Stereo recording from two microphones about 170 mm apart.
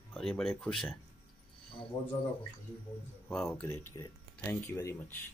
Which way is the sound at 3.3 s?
Centre (ahead or behind).